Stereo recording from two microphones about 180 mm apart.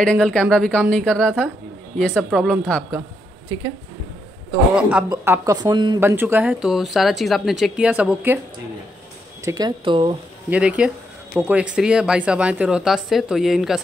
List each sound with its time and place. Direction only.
0.0 s speech: 5° left (ahead or behind)
4.7 s speech: 5° right (ahead or behind); by 5.9 s 25° right (ahead or behind)
5.9 s speech: 10° right (ahead or behind)
9.4 s speech: 20° right (ahead or behind)
10.5 s speech: 5° right (ahead or behind)